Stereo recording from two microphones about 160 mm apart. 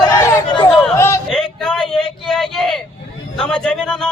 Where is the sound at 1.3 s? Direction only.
Centre (ahead or behind).